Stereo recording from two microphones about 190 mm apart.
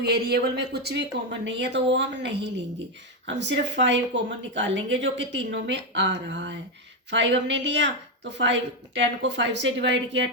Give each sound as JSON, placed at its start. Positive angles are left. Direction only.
{"t": 0.0, "sound": "speech", "side_deg": -55}